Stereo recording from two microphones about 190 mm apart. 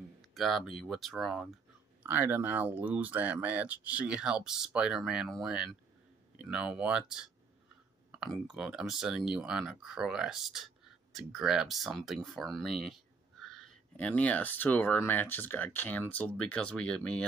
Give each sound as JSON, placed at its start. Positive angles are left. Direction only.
{"t": 0.3, "sound": "speech", "side_deg": 0}